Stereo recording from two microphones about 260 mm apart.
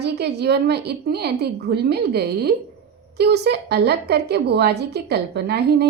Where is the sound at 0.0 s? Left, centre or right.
Right.